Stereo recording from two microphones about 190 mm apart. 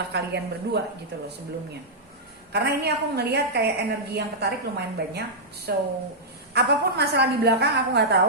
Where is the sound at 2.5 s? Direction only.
60° right (ahead or behind).